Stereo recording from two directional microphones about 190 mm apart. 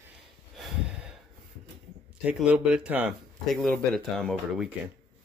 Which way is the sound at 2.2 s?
5° right (ahead or behind).